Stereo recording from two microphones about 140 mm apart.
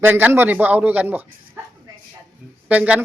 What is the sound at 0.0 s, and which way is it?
Speech, 15° right (ahead or behind).